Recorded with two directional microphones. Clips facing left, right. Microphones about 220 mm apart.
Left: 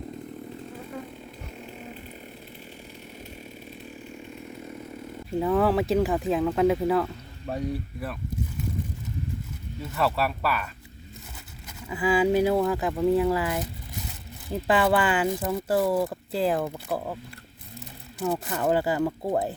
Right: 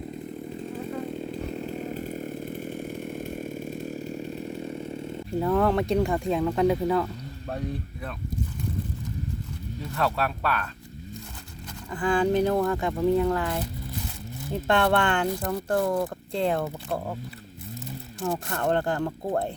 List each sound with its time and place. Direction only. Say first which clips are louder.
1.9 s chainsaw: right 10 dB; 45° right (ahead or behind)
5.3 s speech: left 1 dB; 5° left (ahead or behind)
9.9 s speech: left 1 dB; 5° left (ahead or behind)
11.9 s speech: left 1 dB; 5° left (ahead or behind)
18.2 s speech: left 2 dB; 5° left (ahead or behind)